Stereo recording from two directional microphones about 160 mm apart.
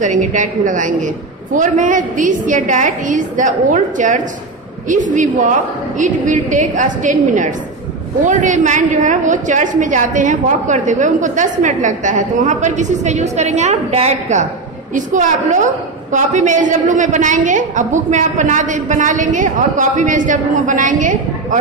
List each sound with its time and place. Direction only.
0.0 s a woman's voice: 50° right (ahead or behind)